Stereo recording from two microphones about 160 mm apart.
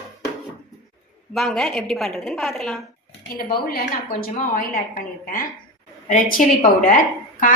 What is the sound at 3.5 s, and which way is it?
A woman's voice, 70° left (ahead or behind).